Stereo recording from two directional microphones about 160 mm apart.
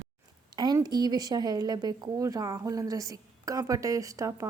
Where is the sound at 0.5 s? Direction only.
25° right (ahead or behind).